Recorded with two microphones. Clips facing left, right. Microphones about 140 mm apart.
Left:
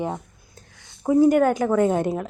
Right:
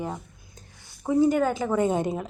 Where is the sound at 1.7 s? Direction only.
5° right (ahead or behind).